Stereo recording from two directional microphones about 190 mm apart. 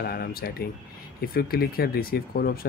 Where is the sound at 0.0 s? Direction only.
55° left (ahead or behind).